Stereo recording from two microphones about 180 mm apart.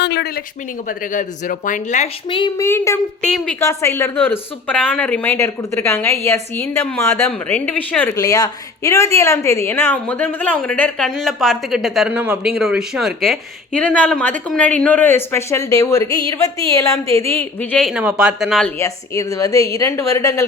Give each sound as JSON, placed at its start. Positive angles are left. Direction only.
{"t": 0.0, "sound": "a sound", "side_deg": 70}
{"t": 1.1, "sound": "speech", "side_deg": 45}
{"t": 2.6, "sound": "a woman's voice", "side_deg": 15}
{"t": 3.6, "sound": "speech", "side_deg": 15}
{"t": 18.8, "sound": "speech", "side_deg": 20}